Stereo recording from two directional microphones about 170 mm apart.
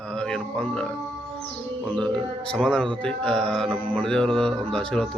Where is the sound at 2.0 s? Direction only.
5° left (ahead or behind).